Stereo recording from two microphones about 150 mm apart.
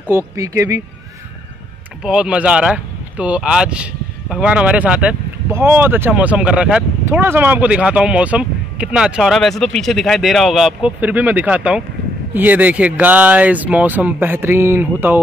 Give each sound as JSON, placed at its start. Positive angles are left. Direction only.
{"t": 0.4, "sound": "speech", "side_deg": -20}
{"t": 2.0, "sound": "speech", "side_deg": -5}